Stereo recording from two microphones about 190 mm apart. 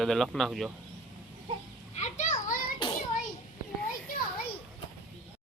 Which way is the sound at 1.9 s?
35° left (ahead or behind).